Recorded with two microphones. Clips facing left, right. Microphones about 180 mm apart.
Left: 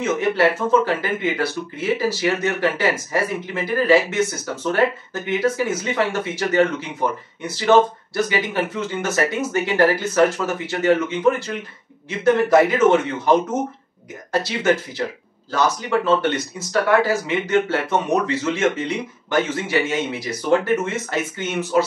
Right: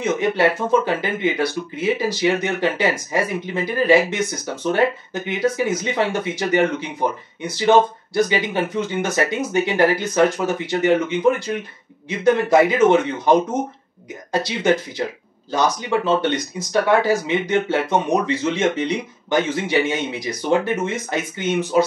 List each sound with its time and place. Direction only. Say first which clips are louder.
0.0 s speech: even; 15° right (ahead or behind)